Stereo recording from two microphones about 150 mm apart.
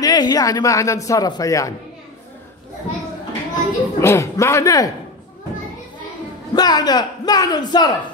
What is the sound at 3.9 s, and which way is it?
Speech, 20° left (ahead or behind).